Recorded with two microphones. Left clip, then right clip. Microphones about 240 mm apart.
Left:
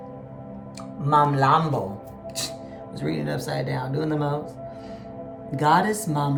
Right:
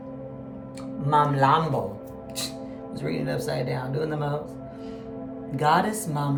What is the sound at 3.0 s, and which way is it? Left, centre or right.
A woman's voice, centre.